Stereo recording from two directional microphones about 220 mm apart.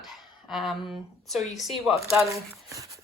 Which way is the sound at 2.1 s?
15° right (ahead or behind).